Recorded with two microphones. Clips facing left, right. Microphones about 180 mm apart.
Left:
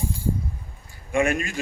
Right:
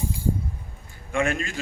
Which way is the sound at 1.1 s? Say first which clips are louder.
Left 3 dB; 15° left (ahead or behind).